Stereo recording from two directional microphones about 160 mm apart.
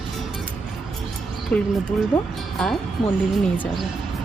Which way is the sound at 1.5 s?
10° left (ahead or behind).